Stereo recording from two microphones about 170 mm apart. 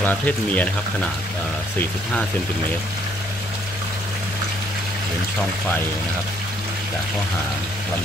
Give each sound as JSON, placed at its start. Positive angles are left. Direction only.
{"t": 0.0, "sound": "speech", "side_deg": 10}